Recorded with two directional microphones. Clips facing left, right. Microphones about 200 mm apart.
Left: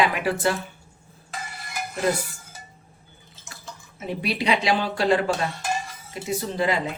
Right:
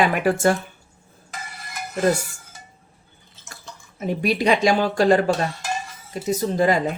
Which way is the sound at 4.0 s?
45° right (ahead or behind).